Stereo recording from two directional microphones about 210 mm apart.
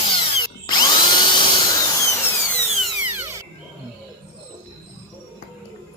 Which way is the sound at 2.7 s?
5° right (ahead or behind).